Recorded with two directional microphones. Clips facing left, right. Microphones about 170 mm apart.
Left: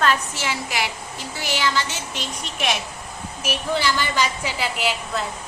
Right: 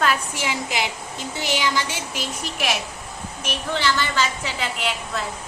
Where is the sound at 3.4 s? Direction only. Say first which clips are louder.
Left 1 dB; 10° left (ahead or behind).